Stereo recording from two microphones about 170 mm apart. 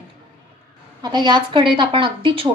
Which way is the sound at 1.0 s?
25° right (ahead or behind).